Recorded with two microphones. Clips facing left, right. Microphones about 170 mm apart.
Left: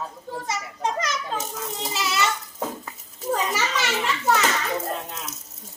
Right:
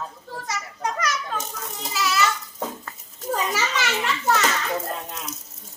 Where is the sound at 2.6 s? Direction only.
5° left (ahead or behind).